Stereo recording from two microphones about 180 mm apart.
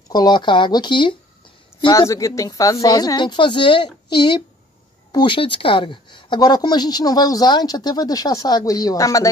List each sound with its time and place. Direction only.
0.1 s speech: 25° left (ahead or behind)